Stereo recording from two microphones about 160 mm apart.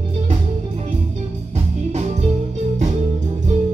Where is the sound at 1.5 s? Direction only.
45° right (ahead or behind).